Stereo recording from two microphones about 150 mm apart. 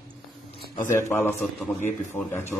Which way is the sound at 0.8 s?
15° left (ahead or behind).